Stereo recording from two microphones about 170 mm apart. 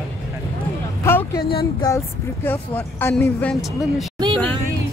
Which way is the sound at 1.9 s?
20° left (ahead or behind).